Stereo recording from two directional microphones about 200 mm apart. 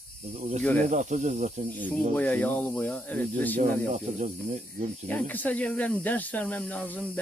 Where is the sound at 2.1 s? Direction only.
5° left (ahead or behind).